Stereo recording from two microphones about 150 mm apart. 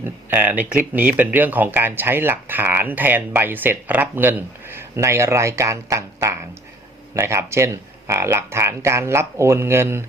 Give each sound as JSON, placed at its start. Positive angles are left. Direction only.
{"t": 0.0, "sound": "speech", "side_deg": -10}